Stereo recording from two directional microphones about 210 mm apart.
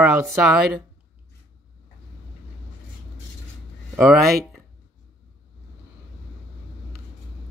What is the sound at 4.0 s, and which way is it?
Speech, centre (ahead or behind).